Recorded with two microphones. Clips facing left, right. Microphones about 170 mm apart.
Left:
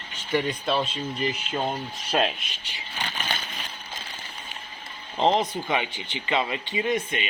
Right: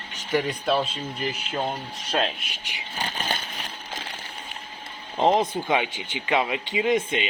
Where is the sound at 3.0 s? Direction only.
35° right (ahead or behind).